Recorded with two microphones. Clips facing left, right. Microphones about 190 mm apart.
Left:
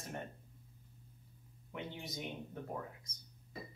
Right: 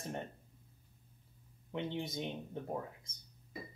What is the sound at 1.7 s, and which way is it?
Speech, 25° right (ahead or behind).